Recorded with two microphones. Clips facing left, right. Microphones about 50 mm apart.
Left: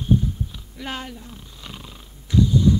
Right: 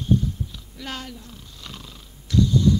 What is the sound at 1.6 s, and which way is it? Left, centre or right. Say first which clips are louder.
Purr: left 1 dB; centre.